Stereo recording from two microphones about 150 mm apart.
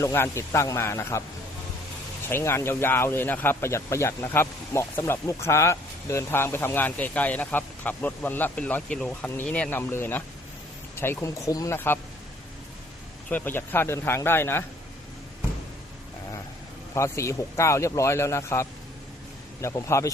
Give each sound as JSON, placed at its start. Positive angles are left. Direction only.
{"t": 0.0, "sound": "speech", "side_deg": 15}
{"t": 2.3, "sound": "speech", "side_deg": 15}
{"t": 13.3, "sound": "speech", "side_deg": 15}
{"t": 16.9, "sound": "speech", "side_deg": 20}